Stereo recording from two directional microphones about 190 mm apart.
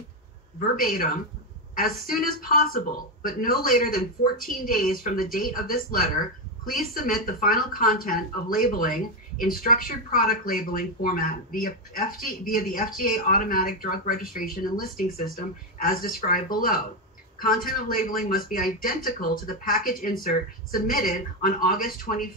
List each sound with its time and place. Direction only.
0.6 s speech: 45° left (ahead or behind)
15.8 s speech: 50° left (ahead or behind)